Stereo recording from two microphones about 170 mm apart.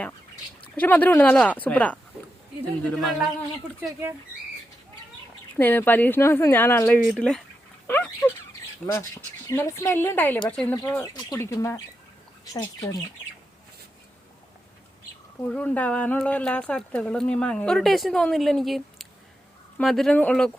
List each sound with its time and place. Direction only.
0.8 s speech: 10° left (ahead or behind)
5.5 s speech: 10° left (ahead or behind)
15.4 s speech: 10° left (ahead or behind)